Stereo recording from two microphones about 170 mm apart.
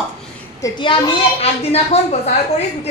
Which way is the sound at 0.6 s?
30° left (ahead or behind).